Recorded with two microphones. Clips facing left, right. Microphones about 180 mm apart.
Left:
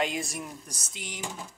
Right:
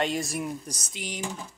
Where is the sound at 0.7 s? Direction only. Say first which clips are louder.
Right 5 dB; 20° right (ahead or behind).